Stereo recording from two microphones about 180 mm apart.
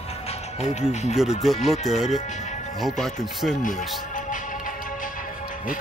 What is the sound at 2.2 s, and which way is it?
Speech, 40° left (ahead or behind).